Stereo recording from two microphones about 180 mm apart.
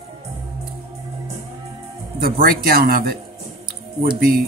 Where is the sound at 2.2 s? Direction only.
55° right (ahead or behind).